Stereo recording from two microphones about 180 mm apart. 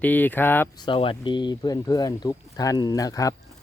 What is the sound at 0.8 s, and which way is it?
Speech, 30° left (ahead or behind).